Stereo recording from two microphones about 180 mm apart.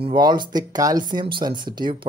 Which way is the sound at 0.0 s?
25° right (ahead or behind).